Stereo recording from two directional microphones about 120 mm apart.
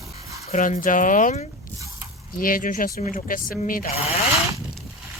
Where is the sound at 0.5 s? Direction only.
90° left.